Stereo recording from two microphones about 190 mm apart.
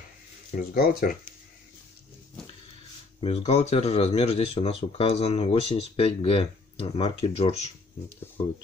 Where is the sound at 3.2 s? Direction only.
30° left (ahead or behind).